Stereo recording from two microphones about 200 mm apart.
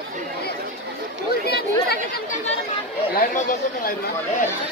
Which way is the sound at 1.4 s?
50° left (ahead or behind).